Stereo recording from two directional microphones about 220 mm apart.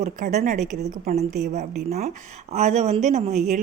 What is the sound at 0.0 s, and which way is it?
Speech, 35° right (ahead or behind).